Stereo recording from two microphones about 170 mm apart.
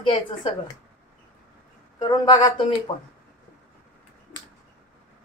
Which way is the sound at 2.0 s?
25° left (ahead or behind).